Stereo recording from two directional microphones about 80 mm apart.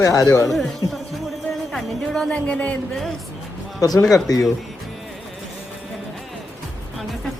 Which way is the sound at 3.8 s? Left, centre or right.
Left.